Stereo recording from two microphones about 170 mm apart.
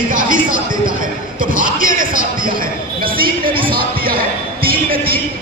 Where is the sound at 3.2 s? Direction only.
60° right (ahead or behind).